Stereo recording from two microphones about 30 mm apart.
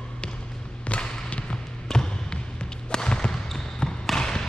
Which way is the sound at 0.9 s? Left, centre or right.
Left.